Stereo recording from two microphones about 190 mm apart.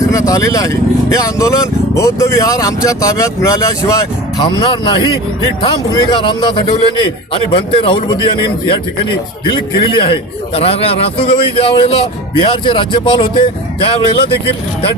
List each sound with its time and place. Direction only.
0.1 s a man's voice: 15° left (ahead or behind)
9.6 s a man's voice: 25° left (ahead or behind)